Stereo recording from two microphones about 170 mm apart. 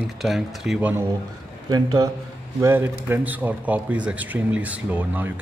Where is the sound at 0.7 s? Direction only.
10° right (ahead or behind).